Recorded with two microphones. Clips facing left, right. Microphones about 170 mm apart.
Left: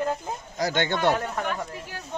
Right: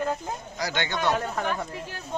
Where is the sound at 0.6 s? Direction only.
50° left (ahead or behind).